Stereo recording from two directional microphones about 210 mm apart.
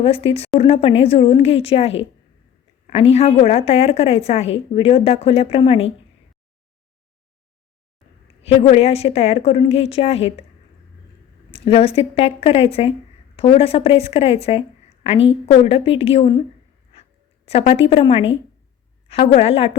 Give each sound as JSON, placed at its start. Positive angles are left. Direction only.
{"t": 0.0, "sound": "a woman's voice", "side_deg": 25}
{"t": 8.4, "sound": "a woman's voice", "side_deg": 30}
{"t": 11.5, "sound": "a woman's voice", "side_deg": 30}
{"t": 16.9, "sound": "a sound", "side_deg": 30}
{"t": 19.0, "sound": "a woman's voice", "side_deg": 30}